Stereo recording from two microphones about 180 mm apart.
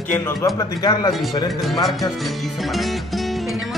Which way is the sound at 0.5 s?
20° left (ahead or behind).